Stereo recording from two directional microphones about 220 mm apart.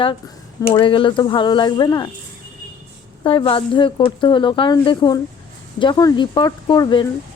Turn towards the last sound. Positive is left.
turn(degrees=20)  # may be behind; listen again after turning